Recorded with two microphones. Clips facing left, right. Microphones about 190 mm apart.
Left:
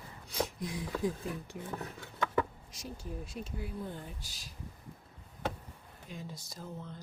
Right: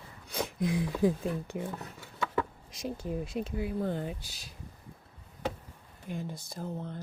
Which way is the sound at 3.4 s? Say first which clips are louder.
Right 8 dB; 90° right.